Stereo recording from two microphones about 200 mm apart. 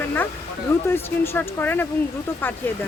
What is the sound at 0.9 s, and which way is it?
Speech, 10° left (ahead or behind).